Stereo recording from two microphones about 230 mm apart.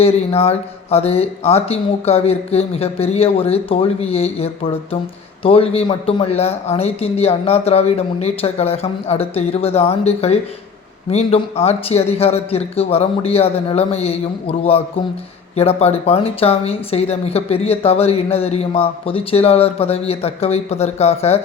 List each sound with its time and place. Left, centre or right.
0.0 s speech: left